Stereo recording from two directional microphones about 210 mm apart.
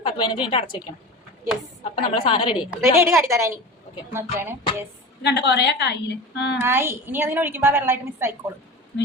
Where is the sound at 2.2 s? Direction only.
25° left (ahead or behind).